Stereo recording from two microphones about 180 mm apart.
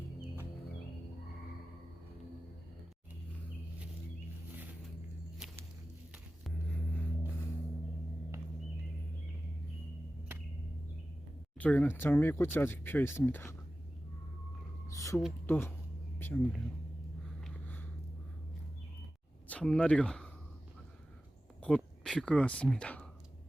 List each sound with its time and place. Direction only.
11.5 s speech: 10° left (ahead or behind)
14.9 s a sound: 15° left (ahead or behind)
15.4 s speech: 10° left (ahead or behind)
19.5 s speech: 5° left (ahead or behind)
21.6 s speech: 5° left (ahead or behind)